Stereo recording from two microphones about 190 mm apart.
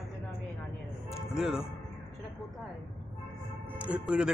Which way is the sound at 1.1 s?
Centre (ahead or behind).